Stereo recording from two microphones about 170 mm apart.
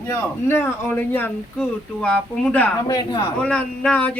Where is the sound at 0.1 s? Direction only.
15° left (ahead or behind).